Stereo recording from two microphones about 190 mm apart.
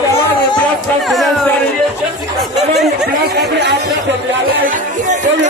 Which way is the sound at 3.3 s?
60° right (ahead or behind).